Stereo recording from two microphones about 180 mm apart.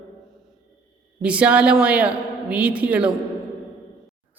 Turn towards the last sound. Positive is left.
turn(degrees=-5)  # may be behind; listen again after turning